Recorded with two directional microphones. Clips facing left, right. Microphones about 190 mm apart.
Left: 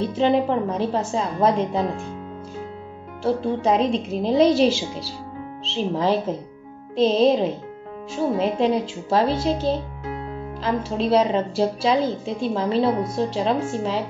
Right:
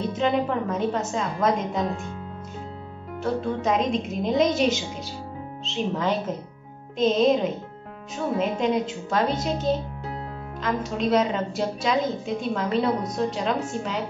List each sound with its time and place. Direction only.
0.0 s a woman's voice: 30° left (ahead or behind)
3.4 s a woman's voice: 30° left (ahead or behind)